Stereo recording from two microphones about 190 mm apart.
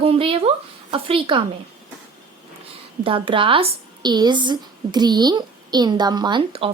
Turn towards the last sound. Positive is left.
turn(degrees=-25)  # may be behind; listen again after turning